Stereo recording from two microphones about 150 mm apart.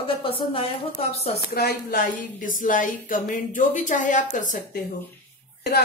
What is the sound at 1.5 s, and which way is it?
A woman's voice, 90° left.